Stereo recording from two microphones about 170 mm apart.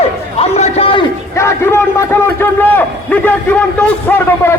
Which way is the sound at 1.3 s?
15° left (ahead or behind).